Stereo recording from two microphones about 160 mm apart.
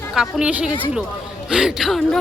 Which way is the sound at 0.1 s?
5° right (ahead or behind).